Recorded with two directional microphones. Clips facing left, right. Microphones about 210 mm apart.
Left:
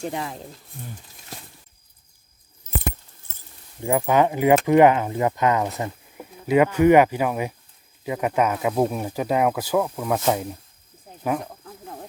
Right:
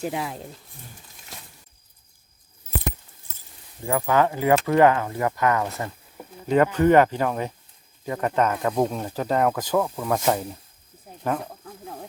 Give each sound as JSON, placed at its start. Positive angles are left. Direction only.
{"t": 0.0, "sound": "speech", "side_deg": 0}
{"t": 3.8, "sound": "speech", "side_deg": 20}
{"t": 11.2, "sound": "speech", "side_deg": 5}
{"t": 11.6, "sound": "a sound", "side_deg": 0}